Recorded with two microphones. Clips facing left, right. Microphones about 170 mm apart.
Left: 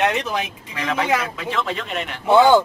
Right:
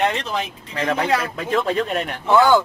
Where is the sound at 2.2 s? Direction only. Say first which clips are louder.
Left 2 dB; 20° left (ahead or behind).